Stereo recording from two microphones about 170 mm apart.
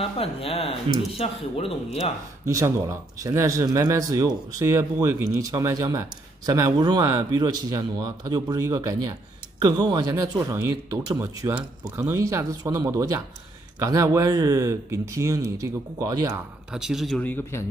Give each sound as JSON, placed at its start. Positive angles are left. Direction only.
{"t": 0.0, "sound": "speech", "side_deg": 35}
{"t": 2.4, "sound": "speech", "side_deg": -15}
{"t": 16.7, "sound": "speech", "side_deg": 0}
{"t": 17.2, "sound": "a man's voice", "side_deg": 10}